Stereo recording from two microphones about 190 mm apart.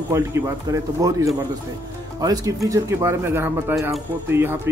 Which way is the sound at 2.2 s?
20° right (ahead or behind).